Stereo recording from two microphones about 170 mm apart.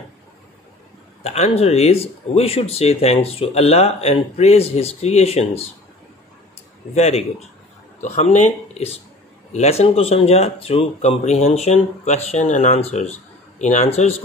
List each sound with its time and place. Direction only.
1.2 s speech: 40° left (ahead or behind)
7.0 s speech: 40° left (ahead or behind)